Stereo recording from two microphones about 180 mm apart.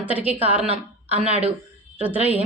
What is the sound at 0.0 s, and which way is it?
Speech, 10° right (ahead or behind).